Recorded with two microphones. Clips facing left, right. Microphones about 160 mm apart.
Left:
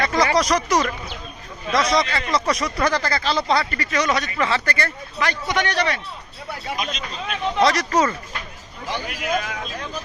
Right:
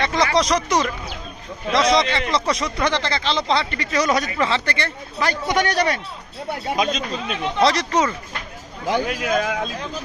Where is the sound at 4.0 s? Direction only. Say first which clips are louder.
Right 2 dB; 35° right (ahead or behind).